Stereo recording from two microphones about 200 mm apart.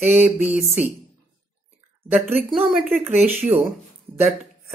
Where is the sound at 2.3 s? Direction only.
Centre (ahead or behind).